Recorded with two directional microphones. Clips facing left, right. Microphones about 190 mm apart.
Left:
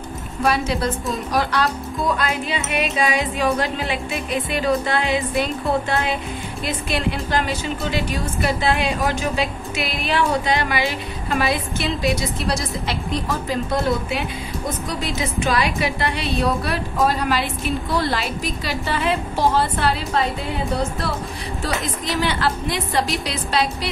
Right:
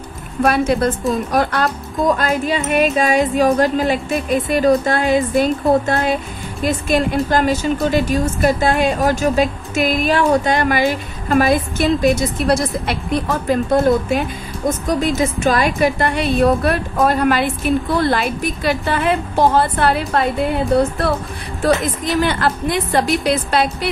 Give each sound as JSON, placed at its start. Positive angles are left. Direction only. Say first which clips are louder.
{"t": 0.4, "sound": "a woman's voice", "louder": "right 6 dB", "side_deg": -55}
{"t": 14.9, "sound": "a woman's voice", "louder": "right 8 dB", "side_deg": -45}
{"t": 21.6, "sound": "a woman's voice", "louder": "right 9 dB", "side_deg": -55}